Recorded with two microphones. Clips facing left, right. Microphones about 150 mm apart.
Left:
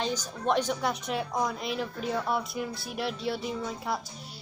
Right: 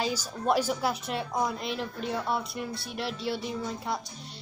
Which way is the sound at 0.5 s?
5° right (ahead or behind).